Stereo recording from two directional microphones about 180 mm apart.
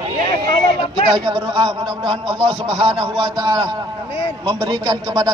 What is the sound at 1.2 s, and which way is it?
A man's voice, 25° right (ahead or behind).